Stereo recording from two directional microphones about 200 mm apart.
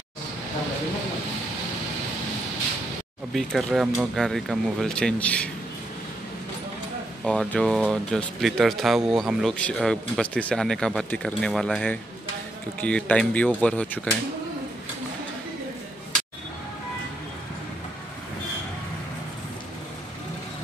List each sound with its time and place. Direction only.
3.3 s speech: centre (ahead or behind)
7.2 s speech: 5° left (ahead or behind)